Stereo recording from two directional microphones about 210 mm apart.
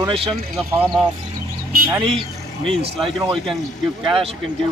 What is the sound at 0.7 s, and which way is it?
Speech, 15° right (ahead or behind).